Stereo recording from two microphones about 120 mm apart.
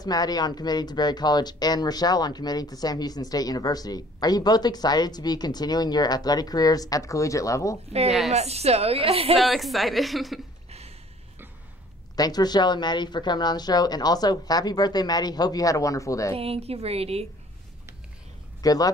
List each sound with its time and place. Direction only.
0.0 s speech: 35° left (ahead or behind)
8.3 s a woman's voice: 65° right (ahead or behind)
9.4 s a woman's voice: centre (ahead or behind)
12.2 s speech: 35° left (ahead or behind)
16.3 s a woman's voice: 55° right (ahead or behind)
18.6 s speech: 30° left (ahead or behind)